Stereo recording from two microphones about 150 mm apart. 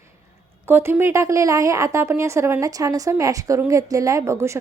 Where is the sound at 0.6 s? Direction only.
15° right (ahead or behind).